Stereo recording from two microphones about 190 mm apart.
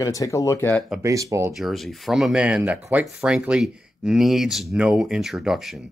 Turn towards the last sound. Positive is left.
turn(degrees=0)  # may be behind; listen again after turning